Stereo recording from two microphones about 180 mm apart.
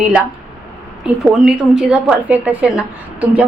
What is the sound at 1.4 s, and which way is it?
A woman's voice, 5° right (ahead or behind).